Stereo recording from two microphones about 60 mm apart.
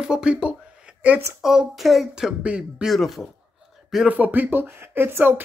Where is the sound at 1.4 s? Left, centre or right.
Centre.